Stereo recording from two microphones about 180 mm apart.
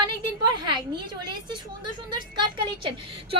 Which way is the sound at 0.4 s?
25° right (ahead or behind).